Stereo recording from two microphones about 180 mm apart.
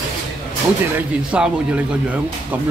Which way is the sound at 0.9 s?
5° right (ahead or behind).